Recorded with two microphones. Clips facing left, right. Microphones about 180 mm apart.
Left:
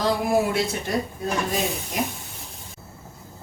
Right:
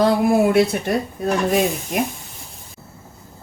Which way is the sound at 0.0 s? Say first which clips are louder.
Right 6 dB; 60° right (ahead or behind).